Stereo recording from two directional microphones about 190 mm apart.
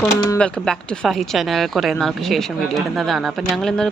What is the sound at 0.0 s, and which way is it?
Speech, 5° left (ahead or behind).